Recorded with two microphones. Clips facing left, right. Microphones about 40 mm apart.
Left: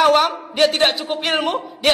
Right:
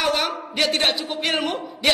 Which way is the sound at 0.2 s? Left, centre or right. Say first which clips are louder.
Left 6 dB; centre.